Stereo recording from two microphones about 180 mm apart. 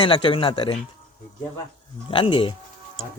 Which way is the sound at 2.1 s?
25° left (ahead or behind).